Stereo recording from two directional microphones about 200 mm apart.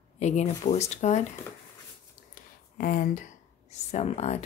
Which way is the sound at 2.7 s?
45° left (ahead or behind).